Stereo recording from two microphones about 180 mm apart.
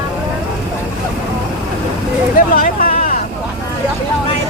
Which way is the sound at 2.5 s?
50° left (ahead or behind).